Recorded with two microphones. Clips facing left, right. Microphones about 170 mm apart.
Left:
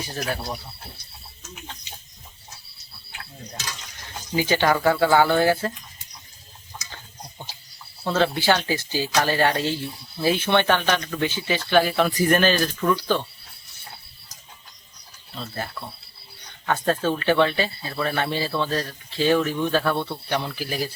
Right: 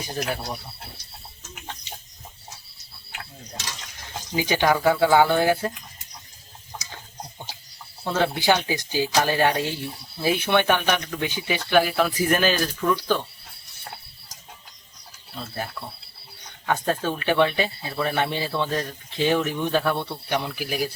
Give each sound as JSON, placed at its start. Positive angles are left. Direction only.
{"t": 0.2, "sound": "speech", "side_deg": -10}
{"t": 4.4, "sound": "speech", "side_deg": -15}
{"t": 8.0, "sound": "speech", "side_deg": -10}
{"t": 15.4, "sound": "speech", "side_deg": -10}